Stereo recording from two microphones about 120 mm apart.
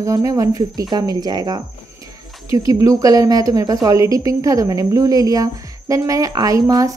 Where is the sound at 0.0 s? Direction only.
30° right (ahead or behind).